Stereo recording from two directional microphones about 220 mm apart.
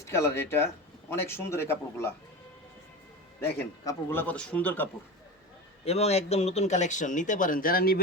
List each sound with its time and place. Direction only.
0.0 s a man's voice: 10° left (ahead or behind)
3.4 s speech: 50° left (ahead or behind)
3.8 s a man's voice: 10° left (ahead or behind)
5.8 s speech: 30° left (ahead or behind); by 8.0 s 45° left (ahead or behind)